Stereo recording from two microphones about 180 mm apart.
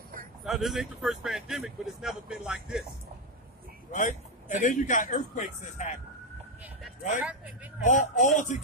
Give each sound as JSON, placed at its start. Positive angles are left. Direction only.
{"t": 0.5, "sound": "speech", "side_deg": 0}
{"t": 3.9, "sound": "a man's voice", "side_deg": 45}
{"t": 7.2, "sound": "speech", "side_deg": -5}
{"t": 7.8, "sound": "a man's voice", "side_deg": 45}